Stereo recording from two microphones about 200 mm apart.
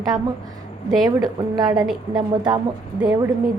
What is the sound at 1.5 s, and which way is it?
A woman's voice, 20° right (ahead or behind).